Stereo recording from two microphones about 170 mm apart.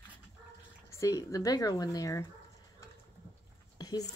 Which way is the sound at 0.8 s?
20° left (ahead or behind).